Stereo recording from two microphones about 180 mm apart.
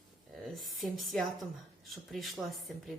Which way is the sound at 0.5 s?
Centre (ahead or behind).